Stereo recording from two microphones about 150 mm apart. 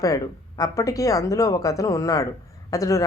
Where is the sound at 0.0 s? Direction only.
25° left (ahead or behind).